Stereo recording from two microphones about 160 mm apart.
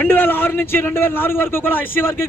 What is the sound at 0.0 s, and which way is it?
A man's voice, 10° left (ahead or behind).